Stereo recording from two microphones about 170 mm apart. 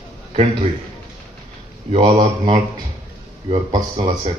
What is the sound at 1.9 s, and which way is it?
Speech, 35° right (ahead or behind).